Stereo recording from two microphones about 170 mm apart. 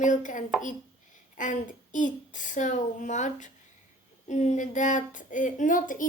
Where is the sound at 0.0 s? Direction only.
50° left (ahead or behind).